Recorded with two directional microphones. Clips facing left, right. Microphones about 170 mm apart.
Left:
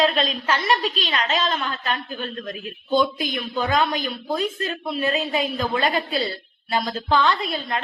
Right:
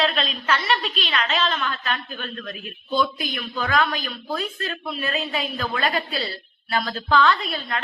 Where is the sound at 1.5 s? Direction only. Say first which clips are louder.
Left 1 dB; 25° left (ahead or behind).